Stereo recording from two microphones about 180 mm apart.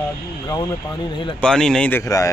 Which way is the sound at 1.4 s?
5° left (ahead or behind).